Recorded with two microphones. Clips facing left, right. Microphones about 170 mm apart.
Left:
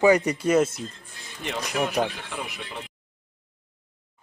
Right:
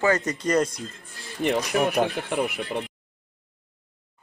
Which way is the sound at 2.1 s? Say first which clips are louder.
Right 9 dB; 50° right (ahead or behind).